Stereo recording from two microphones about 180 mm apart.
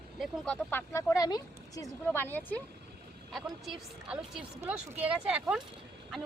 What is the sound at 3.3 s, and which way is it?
A woman's voice, 5° right (ahead or behind).